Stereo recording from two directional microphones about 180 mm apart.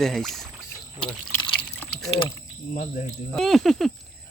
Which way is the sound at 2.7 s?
45° left (ahead or behind).